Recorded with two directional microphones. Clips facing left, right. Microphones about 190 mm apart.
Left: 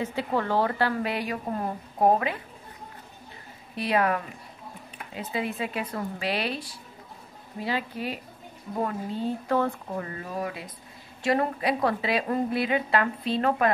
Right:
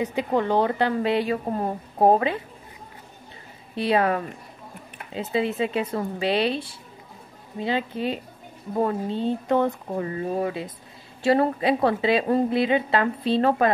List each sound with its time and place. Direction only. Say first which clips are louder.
0.0 s a woman's voice: right 4 dB; 15° right (ahead or behind)
3.7 s a woman's voice: right 3 dB; 30° right (ahead or behind)